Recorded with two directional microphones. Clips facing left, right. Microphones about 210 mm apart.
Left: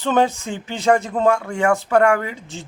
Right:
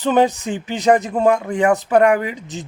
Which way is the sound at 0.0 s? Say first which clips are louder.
Right 3 dB; 15° right (ahead or behind).